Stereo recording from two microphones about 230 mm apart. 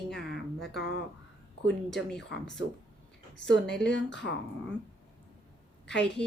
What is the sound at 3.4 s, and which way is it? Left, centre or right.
Speech, left.